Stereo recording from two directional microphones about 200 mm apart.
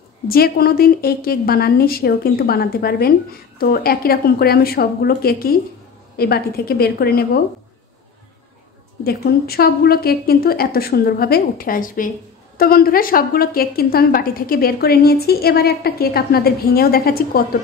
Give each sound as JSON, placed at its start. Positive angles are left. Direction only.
{"t": 0.3, "sound": "a woman's voice", "side_deg": 50}
{"t": 9.0, "sound": "a woman's voice", "side_deg": 50}